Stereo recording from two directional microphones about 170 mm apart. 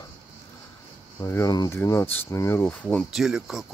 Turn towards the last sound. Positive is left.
turn(degrees=-5)  # may be behind; listen again after turning